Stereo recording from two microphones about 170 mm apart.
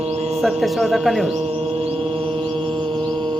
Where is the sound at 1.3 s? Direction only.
35° right (ahead or behind).